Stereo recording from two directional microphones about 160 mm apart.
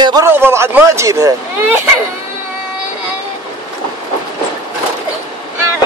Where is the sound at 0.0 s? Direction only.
25° right (ahead or behind).